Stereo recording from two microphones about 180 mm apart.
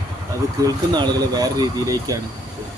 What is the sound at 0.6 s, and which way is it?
Speech, 20° right (ahead or behind).